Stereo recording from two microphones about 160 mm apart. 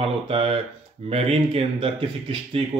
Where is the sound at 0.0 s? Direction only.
35° right (ahead or behind).